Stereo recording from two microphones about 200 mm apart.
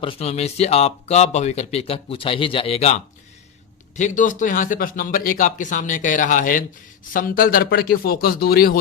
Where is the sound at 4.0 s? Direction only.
40° left (ahead or behind).